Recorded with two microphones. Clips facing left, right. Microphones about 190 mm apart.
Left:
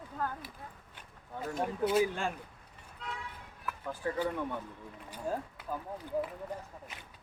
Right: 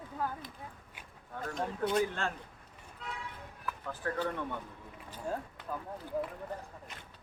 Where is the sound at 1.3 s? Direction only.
10° left (ahead or behind).